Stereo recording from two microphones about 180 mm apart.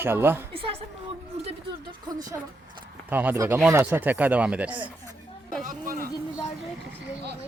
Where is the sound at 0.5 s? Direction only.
30° right (ahead or behind).